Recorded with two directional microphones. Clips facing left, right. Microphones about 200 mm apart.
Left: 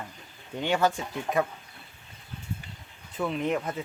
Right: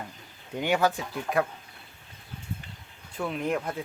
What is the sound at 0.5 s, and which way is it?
Speech, 10° right (ahead or behind).